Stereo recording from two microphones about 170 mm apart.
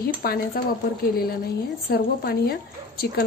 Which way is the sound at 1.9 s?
65° left (ahead or behind).